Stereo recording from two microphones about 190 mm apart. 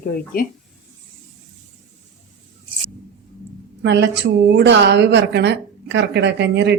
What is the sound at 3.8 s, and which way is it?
A woman's voice, 65° right (ahead or behind).